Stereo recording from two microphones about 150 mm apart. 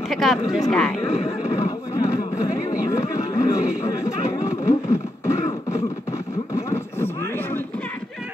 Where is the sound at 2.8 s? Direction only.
20° left (ahead or behind).